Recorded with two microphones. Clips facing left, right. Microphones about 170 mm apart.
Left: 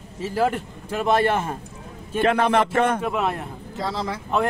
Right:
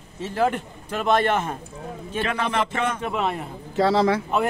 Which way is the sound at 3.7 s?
75° right (ahead or behind).